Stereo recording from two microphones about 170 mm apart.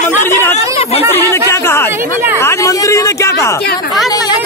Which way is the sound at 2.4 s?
15° left (ahead or behind).